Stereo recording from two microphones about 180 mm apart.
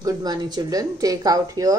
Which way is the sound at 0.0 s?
20° right (ahead or behind).